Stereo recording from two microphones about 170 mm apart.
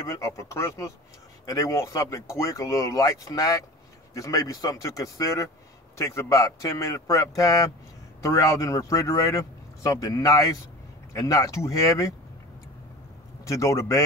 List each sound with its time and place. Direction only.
0.0 s speech: 20° left (ahead or behind)
13.5 s speech: 20° left (ahead or behind)